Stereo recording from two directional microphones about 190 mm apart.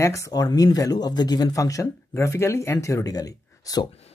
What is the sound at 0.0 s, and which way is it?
Speech, 15° left (ahead or behind).